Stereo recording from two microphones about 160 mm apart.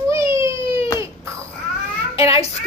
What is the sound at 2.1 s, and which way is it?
Speech, 35° left (ahead or behind).